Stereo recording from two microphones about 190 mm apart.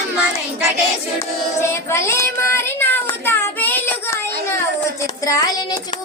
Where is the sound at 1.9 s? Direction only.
15° left (ahead or behind).